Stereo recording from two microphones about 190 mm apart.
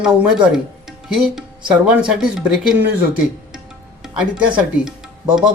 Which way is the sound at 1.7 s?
5° right (ahead or behind).